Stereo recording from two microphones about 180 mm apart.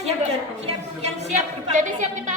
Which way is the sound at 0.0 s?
35° right (ahead or behind).